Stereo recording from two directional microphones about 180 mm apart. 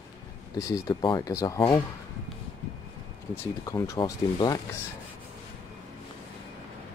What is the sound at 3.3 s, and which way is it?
Speech, 15° left (ahead or behind).